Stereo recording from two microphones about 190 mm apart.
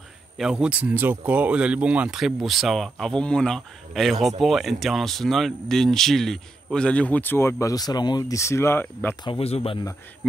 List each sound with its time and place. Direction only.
0.4 s speech: 5° right (ahead or behind); by 9.1 s 10° left (ahead or behind)
9.2 s speech: 30° left (ahead or behind)